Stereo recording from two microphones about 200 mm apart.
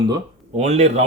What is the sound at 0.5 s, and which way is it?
Speech, 35° right (ahead or behind).